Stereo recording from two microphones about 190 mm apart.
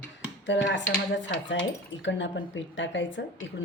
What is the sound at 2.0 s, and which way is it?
A woman's voice, 75° left (ahead or behind).